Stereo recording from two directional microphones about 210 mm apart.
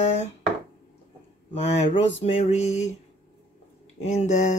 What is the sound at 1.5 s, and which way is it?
Speech, 30° left (ahead or behind).